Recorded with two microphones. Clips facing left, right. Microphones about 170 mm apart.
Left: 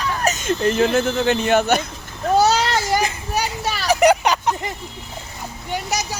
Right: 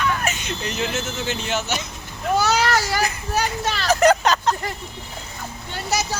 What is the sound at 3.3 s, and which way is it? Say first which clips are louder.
Vehicle: right 2 dB; 10° left (ahead or behind).